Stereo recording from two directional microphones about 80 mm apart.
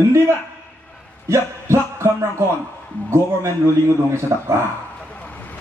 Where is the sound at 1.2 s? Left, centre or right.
Right.